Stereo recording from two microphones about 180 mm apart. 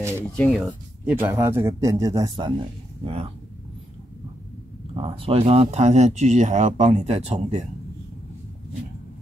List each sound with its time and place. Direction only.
0.2 s speech: centre (ahead or behind)
1.0 s speech: 15° right (ahead or behind); by 3.3 s 30° right (ahead or behind)
4.9 s speech: 30° right (ahead or behind)